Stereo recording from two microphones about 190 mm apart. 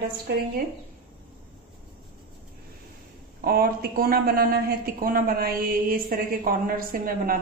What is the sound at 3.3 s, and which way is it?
A woman's voice, 50° right (ahead or behind).